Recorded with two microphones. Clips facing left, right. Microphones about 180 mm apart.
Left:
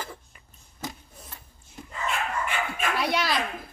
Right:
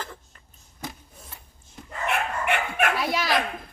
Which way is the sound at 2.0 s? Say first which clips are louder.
Right 3 dB; 65° right (ahead or behind).